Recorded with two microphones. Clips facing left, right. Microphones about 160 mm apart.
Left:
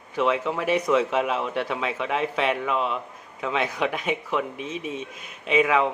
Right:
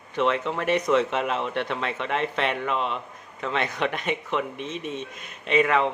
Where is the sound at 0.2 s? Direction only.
5° left (ahead or behind).